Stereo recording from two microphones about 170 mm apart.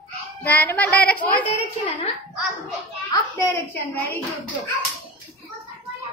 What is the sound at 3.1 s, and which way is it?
Speech, 20° left (ahead or behind).